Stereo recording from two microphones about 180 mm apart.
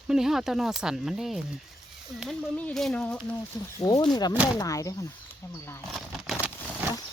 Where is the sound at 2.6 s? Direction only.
5° left (ahead or behind).